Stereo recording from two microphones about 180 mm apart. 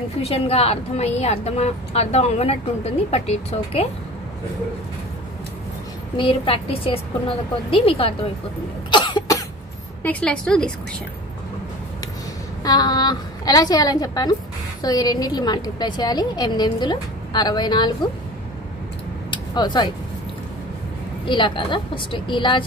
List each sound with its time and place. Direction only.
0.2 s a woman's voice: 35° left (ahead or behind)
6.1 s a woman's voice: 30° left (ahead or behind)
8.9 s cough: 25° left (ahead or behind)
10.0 s a woman's voice: 5° left (ahead or behind)
12.6 s a woman's voice: 20° left (ahead or behind)
19.3 s a sound: 25° left (ahead or behind)
21.3 s a woman's voice: 25° left (ahead or behind)